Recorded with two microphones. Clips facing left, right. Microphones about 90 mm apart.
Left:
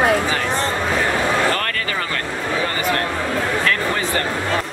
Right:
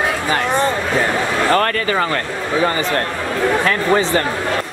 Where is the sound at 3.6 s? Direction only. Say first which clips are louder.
Right 5 dB; 25° right (ahead or behind).